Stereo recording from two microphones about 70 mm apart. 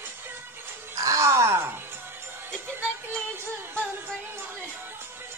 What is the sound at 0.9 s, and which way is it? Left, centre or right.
Groan, right.